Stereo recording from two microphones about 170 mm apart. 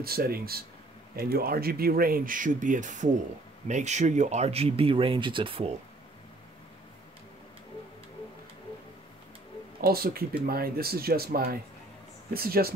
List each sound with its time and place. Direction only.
0.0 s speech: 60° right (ahead or behind); by 5.7 s 30° right (ahead or behind)
9.8 s speech: 60° right (ahead or behind)